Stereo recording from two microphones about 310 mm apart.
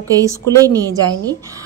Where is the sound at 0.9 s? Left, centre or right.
Centre.